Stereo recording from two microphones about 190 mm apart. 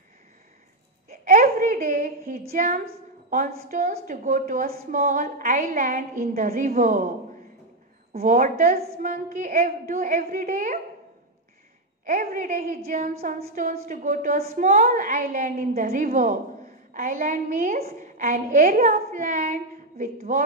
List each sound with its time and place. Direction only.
1.2 s a sound: 45° right (ahead or behind)
2.5 s a woman's voice: 45° right (ahead or behind)
8.2 s a woman's voice: 40° right (ahead or behind)
12.0 s a woman's voice: 45° right (ahead or behind)